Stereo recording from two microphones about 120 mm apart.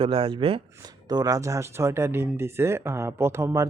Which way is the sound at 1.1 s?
30° right (ahead or behind).